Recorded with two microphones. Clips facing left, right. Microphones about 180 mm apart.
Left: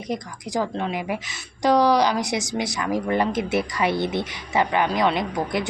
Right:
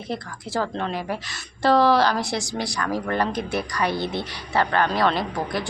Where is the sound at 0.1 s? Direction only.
15° left (ahead or behind).